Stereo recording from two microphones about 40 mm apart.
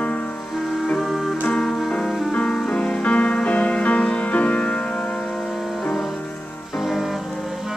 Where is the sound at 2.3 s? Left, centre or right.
Left.